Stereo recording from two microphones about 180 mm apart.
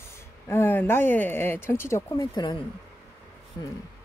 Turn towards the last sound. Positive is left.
turn(degrees=20)  # may be behind; listen again after turning